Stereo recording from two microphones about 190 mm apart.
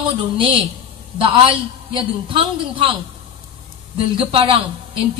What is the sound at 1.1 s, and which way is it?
A woman's voice, 25° right (ahead or behind).